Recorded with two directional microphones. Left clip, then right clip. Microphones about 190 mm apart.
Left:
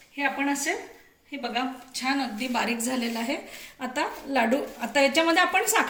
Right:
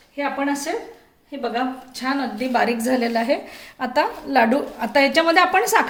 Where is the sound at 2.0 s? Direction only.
45° right (ahead or behind).